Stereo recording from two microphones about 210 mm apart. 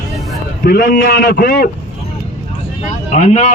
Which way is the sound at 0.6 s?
45° left (ahead or behind).